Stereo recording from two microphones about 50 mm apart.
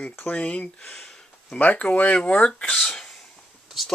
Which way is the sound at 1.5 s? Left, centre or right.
Left.